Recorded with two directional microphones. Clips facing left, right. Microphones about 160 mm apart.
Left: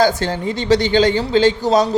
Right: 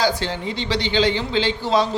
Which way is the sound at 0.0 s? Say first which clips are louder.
Left 5 dB; 45° left (ahead or behind).